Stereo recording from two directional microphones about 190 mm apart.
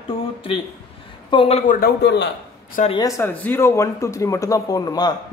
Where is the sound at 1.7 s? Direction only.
55° left (ahead or behind).